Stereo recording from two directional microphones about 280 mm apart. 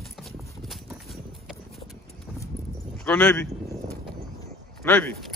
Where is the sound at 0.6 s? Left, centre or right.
Centre.